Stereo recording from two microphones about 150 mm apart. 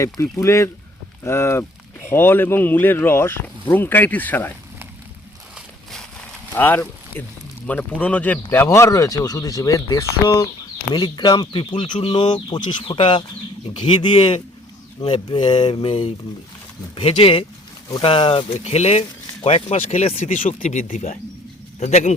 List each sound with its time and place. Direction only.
0.0 s speech: 20° left (ahead or behind)
6.5 s speech: 10° left (ahead or behind); by 22.1 s 50° left (ahead or behind)